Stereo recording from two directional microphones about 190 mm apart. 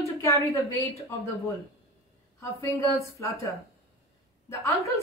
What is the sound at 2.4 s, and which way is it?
Speech, 15° left (ahead or behind).